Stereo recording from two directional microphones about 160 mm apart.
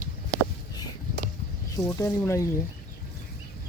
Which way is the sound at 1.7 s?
20° left (ahead or behind).